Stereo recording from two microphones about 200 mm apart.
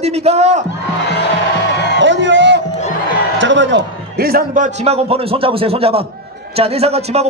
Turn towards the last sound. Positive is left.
turn(degrees=-30)  # may be behind; listen again after turning